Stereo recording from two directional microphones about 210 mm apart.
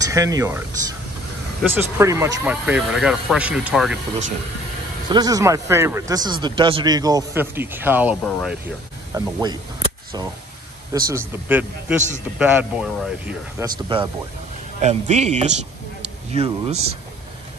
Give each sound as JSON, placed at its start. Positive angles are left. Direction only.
{"t": 0.0, "sound": "a man's voice", "side_deg": -15}
{"t": 5.1, "sound": "a man's voice", "side_deg": -15}
{"t": 9.1, "sound": "speech", "side_deg": -20}
{"t": 10.9, "sound": "a man's voice", "side_deg": -15}
{"t": 14.8, "sound": "a man's voice", "side_deg": -30}